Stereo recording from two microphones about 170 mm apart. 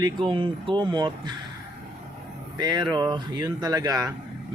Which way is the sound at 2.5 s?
25° right (ahead or behind).